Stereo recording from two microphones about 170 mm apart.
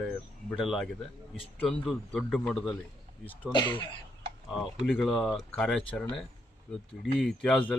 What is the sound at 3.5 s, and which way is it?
Speech, 30° left (ahead or behind).